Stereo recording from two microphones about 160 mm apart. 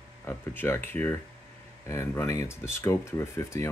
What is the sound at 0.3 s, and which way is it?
Speech, 15° left (ahead or behind).